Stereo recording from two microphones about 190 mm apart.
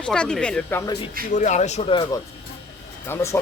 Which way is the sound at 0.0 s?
5° left (ahead or behind).